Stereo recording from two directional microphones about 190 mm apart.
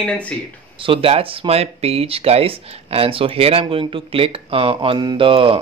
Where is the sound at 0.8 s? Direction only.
30° right (ahead or behind).